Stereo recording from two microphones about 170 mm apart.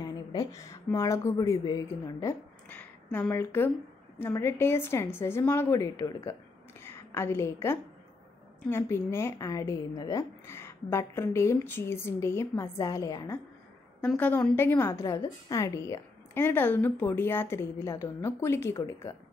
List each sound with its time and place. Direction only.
0.0 s a sound: 25° left (ahead or behind)
0.8 s a woman's voice: 20° left (ahead or behind)
14.0 s a woman's voice: 10° left (ahead or behind)